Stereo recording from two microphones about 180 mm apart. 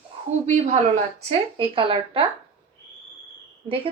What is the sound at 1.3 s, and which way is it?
Speech, 30° right (ahead or behind).